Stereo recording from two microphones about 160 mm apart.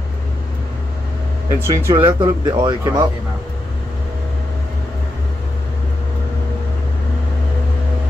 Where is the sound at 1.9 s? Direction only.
20° right (ahead or behind).